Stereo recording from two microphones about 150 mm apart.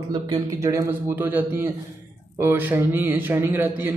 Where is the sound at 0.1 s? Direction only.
25° right (ahead or behind).